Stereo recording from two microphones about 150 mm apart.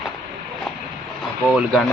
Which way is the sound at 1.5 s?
Centre (ahead or behind).